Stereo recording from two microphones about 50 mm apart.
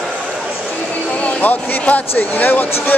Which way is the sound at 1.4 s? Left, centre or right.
Left.